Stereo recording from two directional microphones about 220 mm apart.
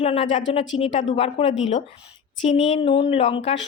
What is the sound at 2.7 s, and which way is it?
Speech, 25° left (ahead or behind).